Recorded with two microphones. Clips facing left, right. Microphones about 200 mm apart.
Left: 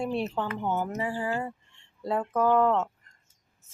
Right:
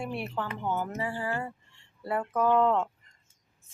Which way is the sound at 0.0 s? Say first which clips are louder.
Left 5 dB; 20° left (ahead or behind).